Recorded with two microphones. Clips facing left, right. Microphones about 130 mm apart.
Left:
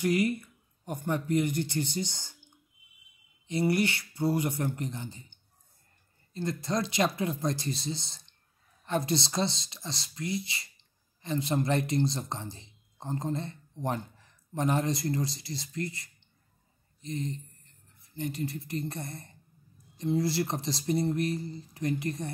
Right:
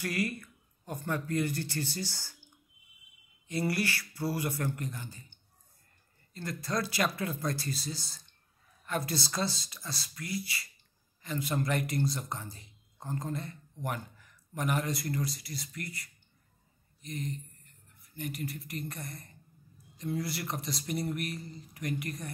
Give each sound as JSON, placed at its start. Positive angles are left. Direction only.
{"t": 0.0, "sound": "speech", "side_deg": 20}
{"t": 3.4, "sound": "speech", "side_deg": 20}